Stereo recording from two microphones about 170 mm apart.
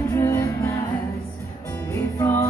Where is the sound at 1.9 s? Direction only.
15° left (ahead or behind).